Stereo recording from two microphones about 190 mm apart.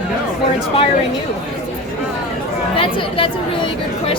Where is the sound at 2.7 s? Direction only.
30° left (ahead or behind).